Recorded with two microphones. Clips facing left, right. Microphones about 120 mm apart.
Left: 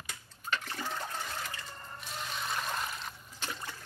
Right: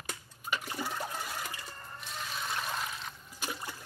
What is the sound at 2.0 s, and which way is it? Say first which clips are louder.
Water: even; centre (ahead or behind).